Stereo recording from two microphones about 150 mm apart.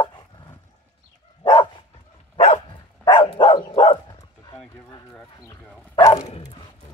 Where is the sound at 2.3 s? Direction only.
40° left (ahead or behind).